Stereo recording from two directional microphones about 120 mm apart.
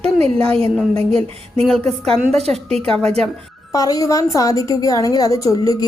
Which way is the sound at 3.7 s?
30° left (ahead or behind).